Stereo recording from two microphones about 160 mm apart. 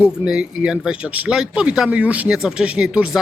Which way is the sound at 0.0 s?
5° right (ahead or behind).